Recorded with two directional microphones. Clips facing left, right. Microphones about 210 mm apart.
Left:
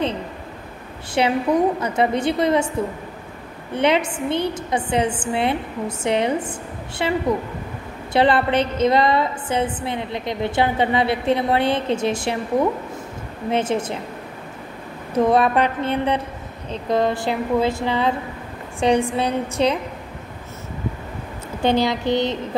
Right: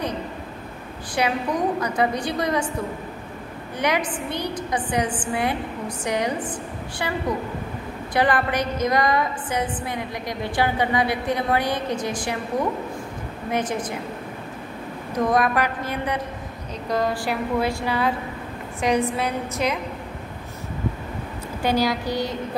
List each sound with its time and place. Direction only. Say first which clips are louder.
1.2 s a woman's voice: left 5 dB; 25° left (ahead or behind)
3.7 s a woman's voice: left 5 dB; 25° left (ahead or behind)
13.5 s a woman's voice: left 4 dB; 25° left (ahead or behind)
15.1 s a woman's voice: left 4 dB; 30° left (ahead or behind)
21.6 s a woman's voice: left 3 dB; 25° left (ahead or behind)